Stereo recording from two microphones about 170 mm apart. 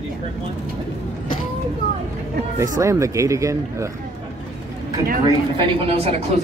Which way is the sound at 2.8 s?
20° right (ahead or behind).